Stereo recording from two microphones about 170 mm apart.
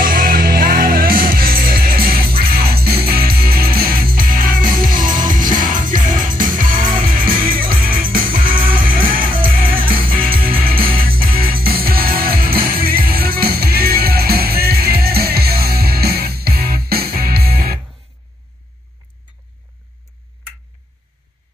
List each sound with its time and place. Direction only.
0.0 s music: 55° right (ahead or behind)